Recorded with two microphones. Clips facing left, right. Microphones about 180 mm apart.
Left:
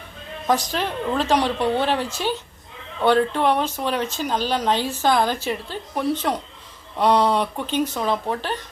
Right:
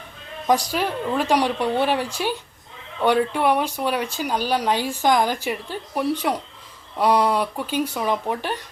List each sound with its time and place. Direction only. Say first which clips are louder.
0.4 s speech: right 1 dB; 10° right (ahead or behind)